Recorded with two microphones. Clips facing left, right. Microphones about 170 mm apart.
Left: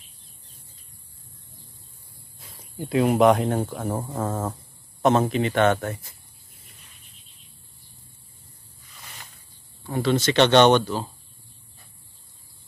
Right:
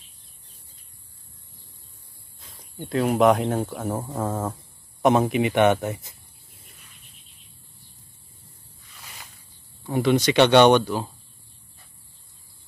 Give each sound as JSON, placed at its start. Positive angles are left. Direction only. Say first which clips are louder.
{"t": 2.4, "sound": "speech", "louder": "left 3 dB", "side_deg": 5}
{"t": 5.0, "sound": "speech", "louder": "right 1 dB", "side_deg": -15}
{"t": 9.8, "sound": "speech", "louder": "right 2 dB", "side_deg": -15}